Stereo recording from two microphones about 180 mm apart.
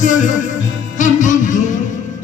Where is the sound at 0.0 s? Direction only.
45° left (ahead or behind).